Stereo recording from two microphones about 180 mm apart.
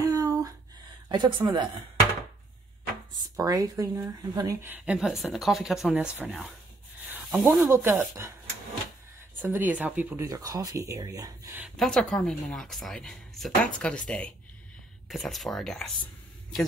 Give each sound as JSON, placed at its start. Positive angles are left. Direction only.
{"t": 0.0, "sound": "a sound", "side_deg": -20}
{"t": 1.0, "sound": "speech", "side_deg": -25}
{"t": 3.3, "sound": "a woman's voice", "side_deg": -20}
{"t": 7.1, "sound": "snake", "side_deg": -10}
{"t": 7.6, "sound": "a woman's voice", "side_deg": -15}
{"t": 9.4, "sound": "a woman's voice", "side_deg": -10}
{"t": 11.7, "sound": "a woman's voice", "side_deg": 0}